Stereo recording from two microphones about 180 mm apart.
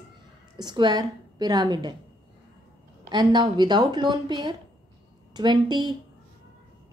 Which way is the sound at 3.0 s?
25° right (ahead or behind).